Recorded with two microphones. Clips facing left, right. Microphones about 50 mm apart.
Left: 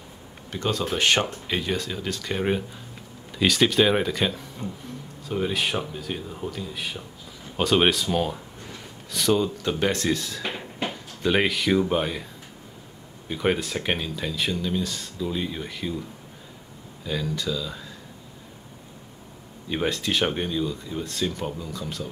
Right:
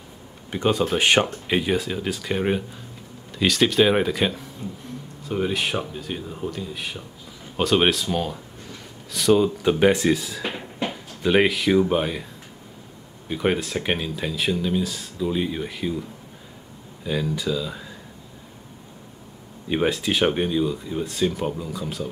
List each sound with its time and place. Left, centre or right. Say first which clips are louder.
0.5 s speech: right 5 dB; centre
9.4 s speech: right 6 dB; centre
13.3 s speech: right 2 dB; centre
19.7 s speech: right 3 dB; centre